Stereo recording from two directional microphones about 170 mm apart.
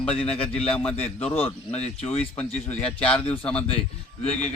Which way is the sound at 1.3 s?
35° left (ahead or behind).